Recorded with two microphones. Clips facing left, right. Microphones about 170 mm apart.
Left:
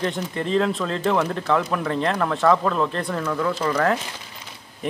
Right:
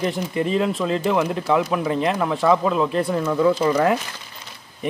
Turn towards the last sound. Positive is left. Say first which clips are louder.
# right 4 dB
turn(degrees=-15)  # may be behind; listen again after turning